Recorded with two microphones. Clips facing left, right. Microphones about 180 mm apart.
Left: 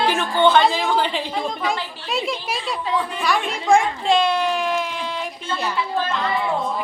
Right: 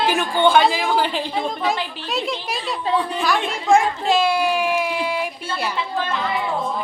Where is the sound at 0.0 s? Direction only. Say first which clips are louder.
Even; 10° right (ahead or behind).